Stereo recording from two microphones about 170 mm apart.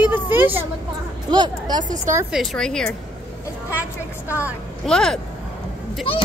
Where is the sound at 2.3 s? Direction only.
Centre (ahead or behind).